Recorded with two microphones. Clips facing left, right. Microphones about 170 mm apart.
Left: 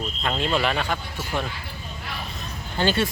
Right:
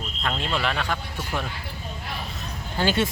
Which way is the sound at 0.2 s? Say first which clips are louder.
Left 3 dB; centre (ahead or behind).